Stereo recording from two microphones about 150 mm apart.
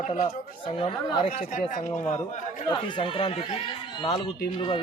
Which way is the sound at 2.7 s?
35° left (ahead or behind).